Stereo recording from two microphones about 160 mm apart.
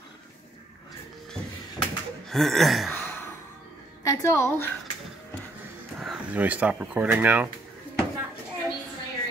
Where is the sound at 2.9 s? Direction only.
15° left (ahead or behind).